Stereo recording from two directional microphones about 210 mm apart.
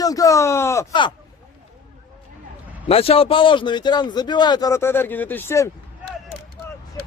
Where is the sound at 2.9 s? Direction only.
30° left (ahead or behind); by 5.7 s 10° left (ahead or behind).